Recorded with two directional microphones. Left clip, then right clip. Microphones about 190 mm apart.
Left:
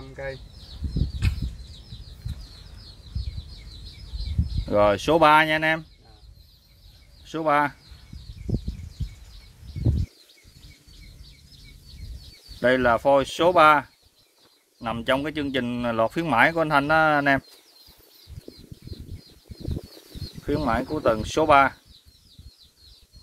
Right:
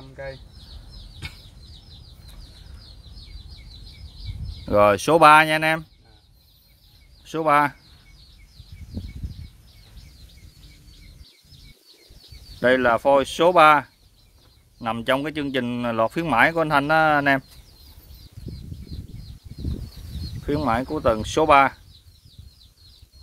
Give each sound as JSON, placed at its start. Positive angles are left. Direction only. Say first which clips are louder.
{"t": 0.1, "sound": "chicken", "louder": "left 1 dB", "side_deg": 25}
{"t": 4.6, "sound": "speech", "louder": "right 3 dB", "side_deg": -30}
{"t": 7.2, "sound": "speech", "louder": "right 3 dB", "side_deg": -25}
{"t": 12.5, "sound": "speech", "louder": "right 2 dB", "side_deg": -25}
{"t": 20.4, "sound": "speech", "louder": "right 2 dB", "side_deg": -25}